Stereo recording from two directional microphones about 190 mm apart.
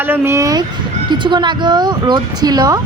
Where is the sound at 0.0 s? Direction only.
10° right (ahead or behind).